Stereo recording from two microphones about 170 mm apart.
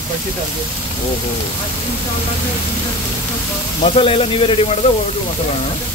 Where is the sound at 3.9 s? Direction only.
35° left (ahead or behind).